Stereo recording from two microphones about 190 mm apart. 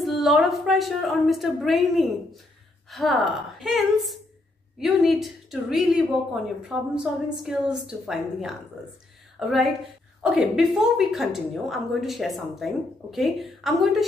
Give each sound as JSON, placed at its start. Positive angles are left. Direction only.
{"t": 0.0, "sound": "a woman's voice", "side_deg": 0}